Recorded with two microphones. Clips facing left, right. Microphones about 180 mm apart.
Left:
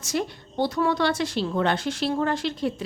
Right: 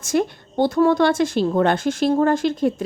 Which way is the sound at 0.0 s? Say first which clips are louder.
Right 7 dB; 50° right (ahead or behind).